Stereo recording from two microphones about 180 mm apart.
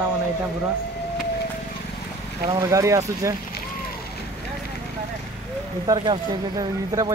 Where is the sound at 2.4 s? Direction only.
20° right (ahead or behind).